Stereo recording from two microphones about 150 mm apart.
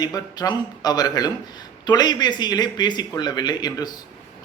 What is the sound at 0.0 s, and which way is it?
Speech, 25° left (ahead or behind).